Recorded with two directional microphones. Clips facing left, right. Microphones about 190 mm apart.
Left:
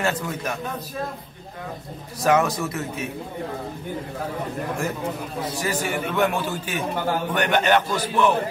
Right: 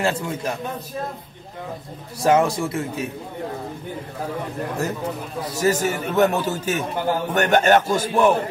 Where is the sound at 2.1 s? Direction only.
30° right (ahead or behind).